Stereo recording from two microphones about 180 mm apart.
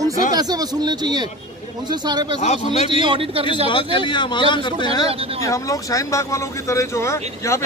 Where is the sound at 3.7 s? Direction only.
25° left (ahead or behind).